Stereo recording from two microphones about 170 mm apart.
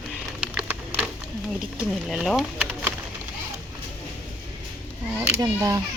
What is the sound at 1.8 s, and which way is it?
Speech, 5° right (ahead or behind).